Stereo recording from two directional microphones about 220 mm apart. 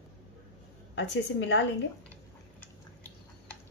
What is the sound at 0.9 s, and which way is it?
Speech, 55° left (ahead or behind).